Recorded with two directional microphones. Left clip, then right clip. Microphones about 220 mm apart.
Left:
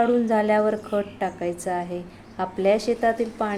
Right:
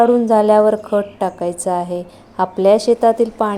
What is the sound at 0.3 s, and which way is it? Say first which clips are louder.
A woman's voice: right 9 dB; 25° right (ahead or behind).